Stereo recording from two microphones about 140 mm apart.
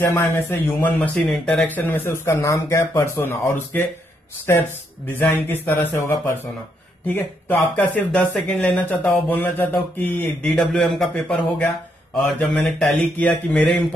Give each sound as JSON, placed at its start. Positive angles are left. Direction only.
{"t": 0.0, "sound": "speech", "side_deg": 20}